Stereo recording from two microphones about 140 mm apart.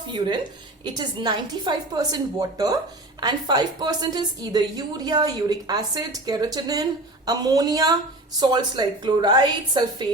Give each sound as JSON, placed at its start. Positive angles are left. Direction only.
{"t": 0.1, "sound": "a woman's voice", "side_deg": -35}